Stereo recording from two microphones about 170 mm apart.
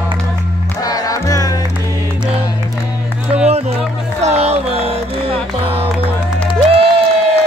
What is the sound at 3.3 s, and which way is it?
Music, 40° right (ahead or behind).